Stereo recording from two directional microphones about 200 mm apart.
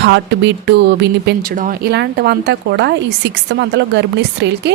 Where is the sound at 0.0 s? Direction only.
60° right (ahead or behind).